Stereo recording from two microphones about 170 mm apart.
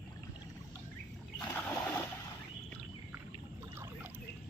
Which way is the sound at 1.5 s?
15° left (ahead or behind).